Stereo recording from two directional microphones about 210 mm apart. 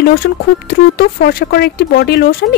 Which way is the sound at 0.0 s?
45° left (ahead or behind).